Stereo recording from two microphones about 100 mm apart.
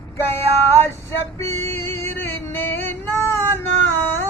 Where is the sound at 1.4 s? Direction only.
25° left (ahead or behind).